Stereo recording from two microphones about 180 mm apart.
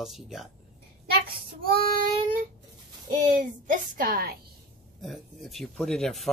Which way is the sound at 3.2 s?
45° right (ahead or behind).